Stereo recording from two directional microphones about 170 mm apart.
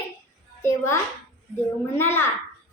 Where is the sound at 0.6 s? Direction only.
15° left (ahead or behind).